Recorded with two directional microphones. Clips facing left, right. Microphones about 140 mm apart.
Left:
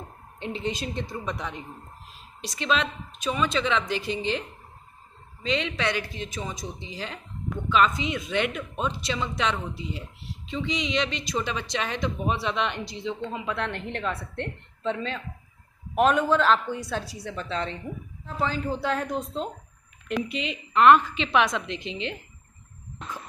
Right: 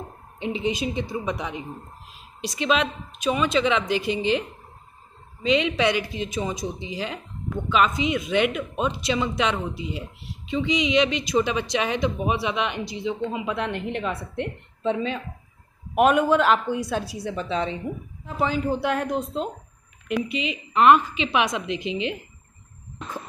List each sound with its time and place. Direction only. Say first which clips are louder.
0.4 s speech: right 5 dB; 10° right (ahead or behind)